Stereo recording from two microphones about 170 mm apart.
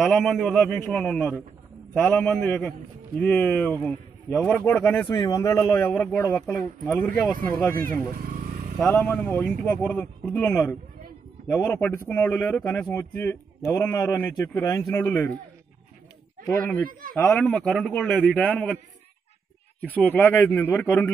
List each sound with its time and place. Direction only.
0.0 s a man's voice: centre (ahead or behind)
5.0 s speech: 30° left (ahead or behind)
5.3 s speech: 15° left (ahead or behind)
8.7 s speech: 5° left (ahead or behind)
17.2 s a man's voice: 10° left (ahead or behind)
19.8 s speech: 10° left (ahead or behind)